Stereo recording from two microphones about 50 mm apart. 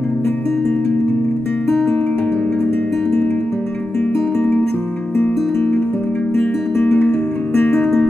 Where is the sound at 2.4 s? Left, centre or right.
Centre.